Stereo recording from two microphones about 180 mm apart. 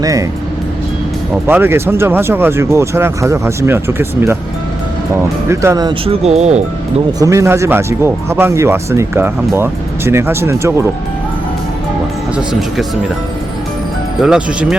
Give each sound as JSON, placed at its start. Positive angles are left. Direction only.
{"t": 0.0, "sound": "speech", "side_deg": -20}
{"t": 1.5, "sound": "speech", "side_deg": -10}
{"t": 5.5, "sound": "speech", "side_deg": -15}
{"t": 6.1, "sound": "speech", "side_deg": -35}
{"t": 7.2, "sound": "speech", "side_deg": -15}
{"t": 12.4, "sound": "speech", "side_deg": 0}
{"t": 14.2, "sound": "speech", "side_deg": -5}